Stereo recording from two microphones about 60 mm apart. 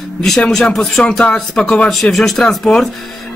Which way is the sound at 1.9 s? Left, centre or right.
Centre.